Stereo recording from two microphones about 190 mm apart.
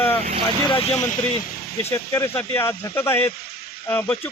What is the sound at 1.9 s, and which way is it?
Speech, 15° left (ahead or behind).